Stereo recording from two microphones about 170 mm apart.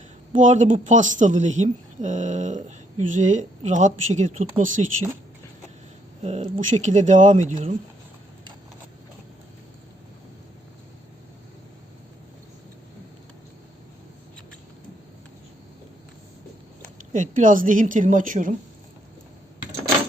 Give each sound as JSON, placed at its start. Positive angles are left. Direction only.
{"t": 0.3, "sound": "speech", "side_deg": -45}
{"t": 6.2, "sound": "speech", "side_deg": -40}
{"t": 17.1, "sound": "speech", "side_deg": -50}